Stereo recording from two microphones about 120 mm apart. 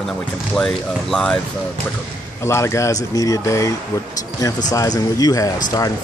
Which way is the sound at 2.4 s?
25° left (ahead or behind).